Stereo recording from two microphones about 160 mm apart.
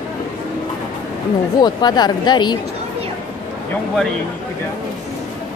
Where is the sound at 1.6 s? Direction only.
25° left (ahead or behind).